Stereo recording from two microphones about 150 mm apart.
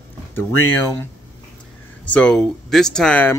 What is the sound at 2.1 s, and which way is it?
Speech, 5° left (ahead or behind).